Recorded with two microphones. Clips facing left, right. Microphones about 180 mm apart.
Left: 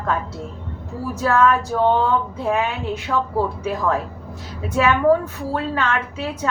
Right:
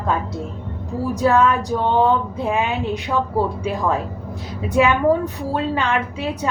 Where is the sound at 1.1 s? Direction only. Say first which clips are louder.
Right 1 dB; 15° right (ahead or behind).